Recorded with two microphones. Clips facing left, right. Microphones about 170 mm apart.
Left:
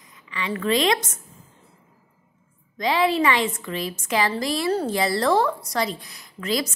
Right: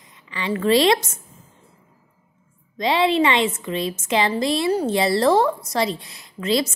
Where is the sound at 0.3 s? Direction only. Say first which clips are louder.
Right 5 dB; 30° right (ahead or behind).